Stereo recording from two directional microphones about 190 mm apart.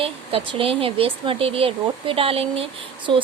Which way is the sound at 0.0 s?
30° right (ahead or behind).